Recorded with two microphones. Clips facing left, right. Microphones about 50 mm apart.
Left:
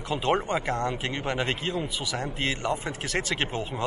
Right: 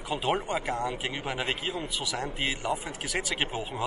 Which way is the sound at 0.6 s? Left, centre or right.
Left.